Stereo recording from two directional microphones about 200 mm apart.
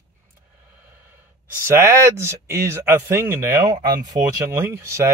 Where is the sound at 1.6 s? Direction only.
10° right (ahead or behind).